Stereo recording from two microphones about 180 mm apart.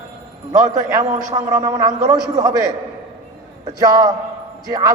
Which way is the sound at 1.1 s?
15° right (ahead or behind).